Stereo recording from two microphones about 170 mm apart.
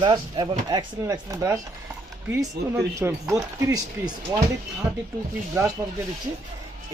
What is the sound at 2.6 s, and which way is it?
Speech, 70° right (ahead or behind).